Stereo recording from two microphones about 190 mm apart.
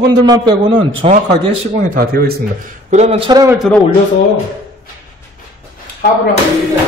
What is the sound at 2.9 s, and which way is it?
Speech, 35° right (ahead or behind).